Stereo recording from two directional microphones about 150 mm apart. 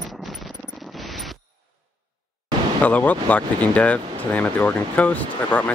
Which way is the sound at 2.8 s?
10° left (ahead or behind).